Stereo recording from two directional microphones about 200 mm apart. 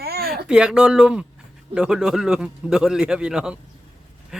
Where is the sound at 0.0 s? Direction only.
50° right (ahead or behind).